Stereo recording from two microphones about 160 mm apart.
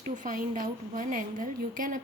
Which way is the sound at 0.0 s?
55° right (ahead or behind).